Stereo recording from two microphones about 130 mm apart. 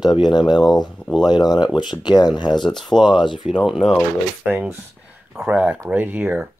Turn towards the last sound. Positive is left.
turn(degrees=-15)  # may be behind; listen again after turning